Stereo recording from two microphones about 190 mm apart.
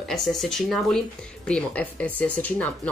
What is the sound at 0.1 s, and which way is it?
Speech, centre (ahead or behind).